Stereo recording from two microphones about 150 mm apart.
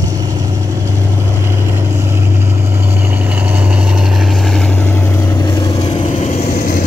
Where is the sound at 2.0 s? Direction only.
15° right (ahead or behind); by 5.4 s 10° left (ahead or behind).